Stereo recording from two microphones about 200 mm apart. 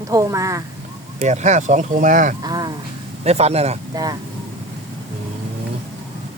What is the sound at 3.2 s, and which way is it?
Speech, 30° right (ahead or behind).